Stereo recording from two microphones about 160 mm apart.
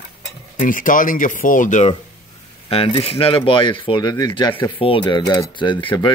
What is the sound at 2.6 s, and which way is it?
Speech, 35° left (ahead or behind).